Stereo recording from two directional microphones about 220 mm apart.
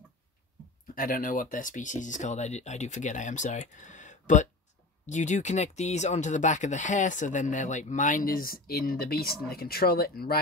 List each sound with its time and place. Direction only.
0.9 s speech: 40° left (ahead or behind)